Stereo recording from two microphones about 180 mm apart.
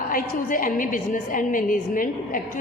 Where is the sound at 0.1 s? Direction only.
50° left (ahead or behind).